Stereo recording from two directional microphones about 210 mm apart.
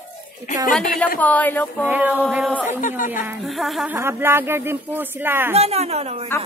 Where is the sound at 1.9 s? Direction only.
10° right (ahead or behind).